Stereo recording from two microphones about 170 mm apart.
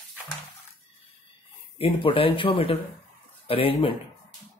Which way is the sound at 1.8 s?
30° left (ahead or behind).